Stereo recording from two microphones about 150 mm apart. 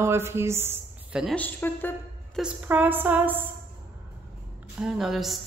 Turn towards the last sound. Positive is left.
turn(degrees=0)  # may be behind; listen again after turning